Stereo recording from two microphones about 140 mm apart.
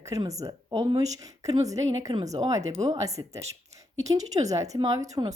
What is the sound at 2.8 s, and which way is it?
A woman's voice, 25° right (ahead or behind).